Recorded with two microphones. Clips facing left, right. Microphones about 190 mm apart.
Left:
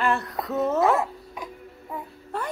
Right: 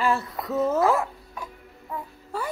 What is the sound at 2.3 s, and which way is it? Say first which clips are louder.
Speech: even; centre (ahead or behind).